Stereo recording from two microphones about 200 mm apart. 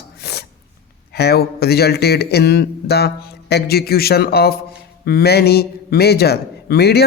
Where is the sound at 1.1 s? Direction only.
55° left (ahead or behind).